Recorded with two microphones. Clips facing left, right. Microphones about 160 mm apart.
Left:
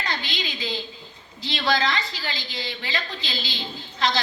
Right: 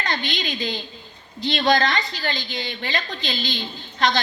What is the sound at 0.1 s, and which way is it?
A woman's voice, 60° right (ahead or behind).